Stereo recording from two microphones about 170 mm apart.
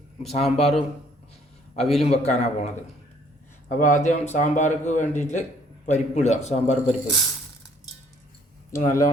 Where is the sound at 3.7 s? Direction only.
50° left (ahead or behind).